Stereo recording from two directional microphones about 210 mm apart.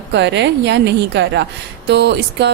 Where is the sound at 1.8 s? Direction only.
55° right (ahead or behind).